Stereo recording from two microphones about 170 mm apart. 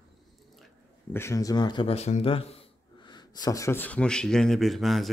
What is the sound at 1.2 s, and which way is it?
Speech, 20° left (ahead or behind).